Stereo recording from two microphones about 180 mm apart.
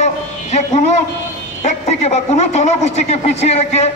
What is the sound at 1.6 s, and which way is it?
A man's voice, 40° left (ahead or behind).